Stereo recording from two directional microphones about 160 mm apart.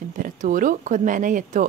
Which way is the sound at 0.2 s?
55° right (ahead or behind).